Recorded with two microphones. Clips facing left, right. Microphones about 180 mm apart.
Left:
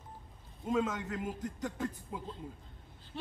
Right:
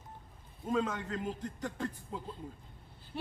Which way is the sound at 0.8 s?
5° left (ahead or behind).